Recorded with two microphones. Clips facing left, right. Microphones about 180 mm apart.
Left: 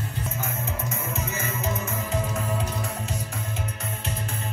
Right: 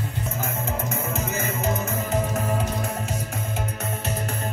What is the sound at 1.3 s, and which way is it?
Music, 70° right (ahead or behind).